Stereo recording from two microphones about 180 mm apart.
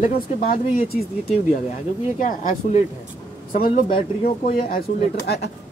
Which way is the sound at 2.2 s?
45° left (ahead or behind).